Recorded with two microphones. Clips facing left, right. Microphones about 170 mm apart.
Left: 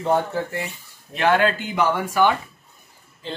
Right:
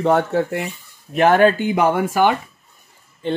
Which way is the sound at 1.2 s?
55° right (ahead or behind).